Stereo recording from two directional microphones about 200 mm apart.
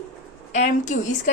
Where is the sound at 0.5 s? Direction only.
40° left (ahead or behind).